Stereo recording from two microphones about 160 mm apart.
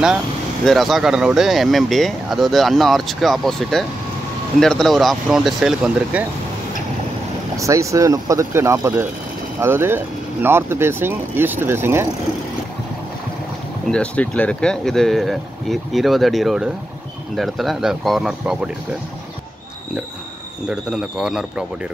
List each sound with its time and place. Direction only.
0.7 s speech: centre (ahead or behind)
7.5 s speech: 20° right (ahead or behind)
13.8 s speech: 5° left (ahead or behind)
20.6 s speech: 5° right (ahead or behind)